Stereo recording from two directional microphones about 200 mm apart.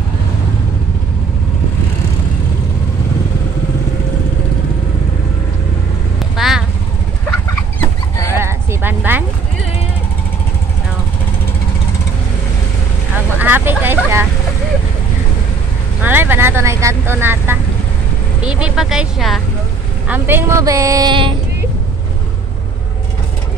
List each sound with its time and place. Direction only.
6.3 s vehicle: centre (ahead or behind)
8.4 s a sound: 10° right (ahead or behind)
13.4 s vehicle: 10° right (ahead or behind)
16.0 s vehicle: 10° right (ahead or behind)
18.4 s a sound: 5° right (ahead or behind)
20.1 s vehicle: 10° right (ahead or behind)